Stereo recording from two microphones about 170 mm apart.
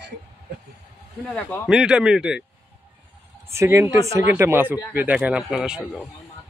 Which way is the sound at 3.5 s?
15° right (ahead or behind).